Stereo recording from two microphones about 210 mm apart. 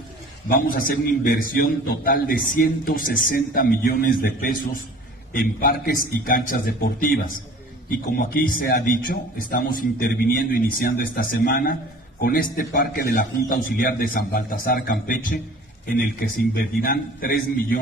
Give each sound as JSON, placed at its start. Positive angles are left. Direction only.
{"t": 0.5, "sound": "a man's voice", "side_deg": 40}